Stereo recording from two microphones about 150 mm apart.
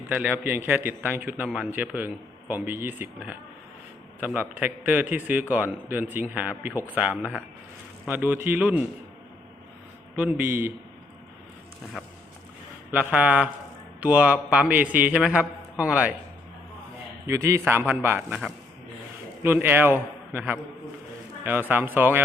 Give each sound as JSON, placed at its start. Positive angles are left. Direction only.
{"t": 0.1, "sound": "a man's voice", "side_deg": -10}
{"t": 4.4, "sound": "a man's voice", "side_deg": -10}
{"t": 10.2, "sound": "a man's voice", "side_deg": -10}
{"t": 12.9, "sound": "a man's voice", "side_deg": -10}
{"t": 17.2, "sound": "a man's voice", "side_deg": -20}
{"t": 19.4, "sound": "a man's voice", "side_deg": -15}